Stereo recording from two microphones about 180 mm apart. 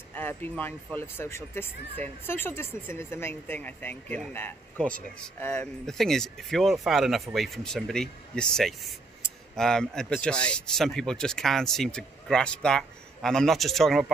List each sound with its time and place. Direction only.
0.1 s speech: 10° left (ahead or behind)